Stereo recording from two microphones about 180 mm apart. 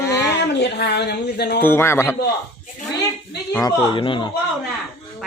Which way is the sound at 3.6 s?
25° left (ahead or behind).